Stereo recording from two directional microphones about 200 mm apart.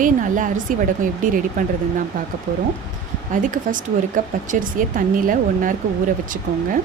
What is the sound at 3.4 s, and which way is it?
Speech, 40° right (ahead or behind).